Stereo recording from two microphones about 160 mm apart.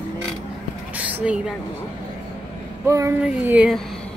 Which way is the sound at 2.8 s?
20° right (ahead or behind).